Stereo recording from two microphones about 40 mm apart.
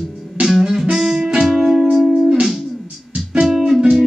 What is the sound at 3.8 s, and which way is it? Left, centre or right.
Music, centre.